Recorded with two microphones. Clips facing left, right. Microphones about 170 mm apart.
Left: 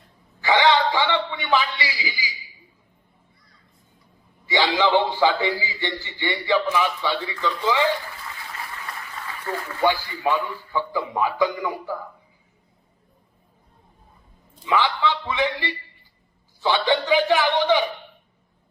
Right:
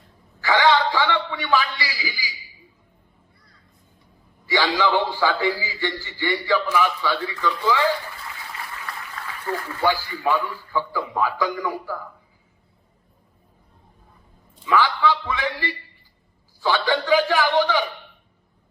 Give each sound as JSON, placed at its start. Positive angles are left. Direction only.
{"t": 0.4, "sound": "a sound", "side_deg": 20}
{"t": 4.4, "sound": "a man's voice", "side_deg": 20}
{"t": 9.8, "sound": "a man's voice", "side_deg": 20}
{"t": 14.6, "sound": "a man's voice", "side_deg": 20}